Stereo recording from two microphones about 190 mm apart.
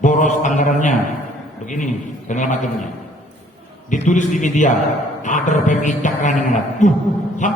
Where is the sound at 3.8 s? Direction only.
40° left (ahead or behind).